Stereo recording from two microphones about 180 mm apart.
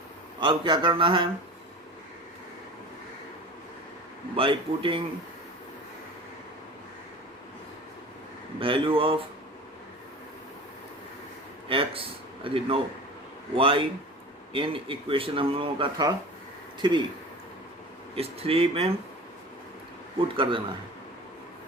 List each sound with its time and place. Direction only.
0.3 s speech: 25° right (ahead or behind)
4.4 s speech: 30° right (ahead or behind)
8.5 s speech: 30° right (ahead or behind)
11.7 s speech: 30° right (ahead or behind)
18.1 s speech: 30° right (ahead or behind)
20.2 s speech: 30° right (ahead or behind)